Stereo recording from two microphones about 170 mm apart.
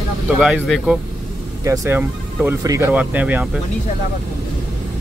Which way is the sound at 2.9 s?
10° right (ahead or behind).